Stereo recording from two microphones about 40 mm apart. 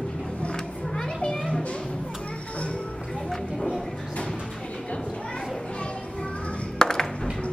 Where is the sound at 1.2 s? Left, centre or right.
Left.